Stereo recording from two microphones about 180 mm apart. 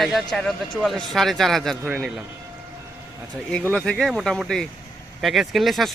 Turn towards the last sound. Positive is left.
turn(degrees=0)  # may be behind; listen again after turning